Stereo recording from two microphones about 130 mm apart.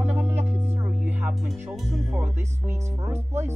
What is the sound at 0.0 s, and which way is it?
Music, 15° right (ahead or behind).